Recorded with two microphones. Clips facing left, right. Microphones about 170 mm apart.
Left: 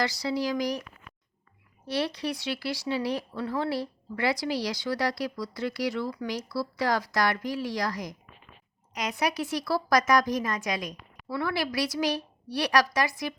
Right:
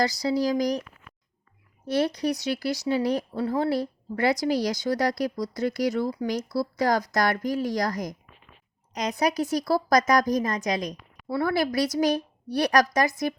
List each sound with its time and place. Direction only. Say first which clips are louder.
0.0 s a woman's voice: right 4 dB; 40° right (ahead or behind)
1.9 s a woman's voice: right 5 dB; 45° right (ahead or behind)